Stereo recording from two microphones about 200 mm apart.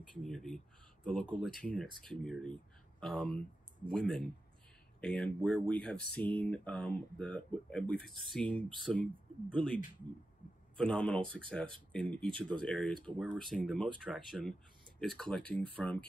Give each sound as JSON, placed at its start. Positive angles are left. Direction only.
{"t": 0.2, "sound": "speech", "side_deg": 0}
{"t": 10.8, "sound": "speech", "side_deg": 5}